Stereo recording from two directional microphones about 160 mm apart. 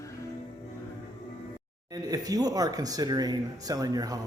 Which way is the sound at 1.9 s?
25° right (ahead or behind).